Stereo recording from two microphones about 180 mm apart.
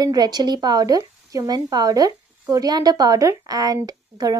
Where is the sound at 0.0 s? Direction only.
20° right (ahead or behind).